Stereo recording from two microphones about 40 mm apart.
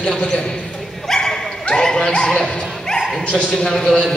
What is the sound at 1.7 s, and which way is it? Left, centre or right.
Music, centre.